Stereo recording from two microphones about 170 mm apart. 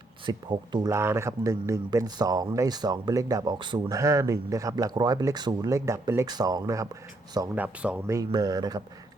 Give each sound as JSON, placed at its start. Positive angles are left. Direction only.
{"t": 0.3, "sound": "speech", "side_deg": -25}
{"t": 7.5, "sound": "speech", "side_deg": -10}